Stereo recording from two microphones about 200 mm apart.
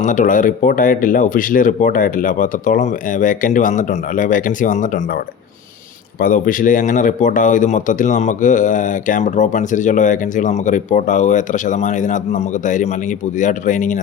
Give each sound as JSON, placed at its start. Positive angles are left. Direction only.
{"t": 0.0, "sound": "a man's voice", "side_deg": 40}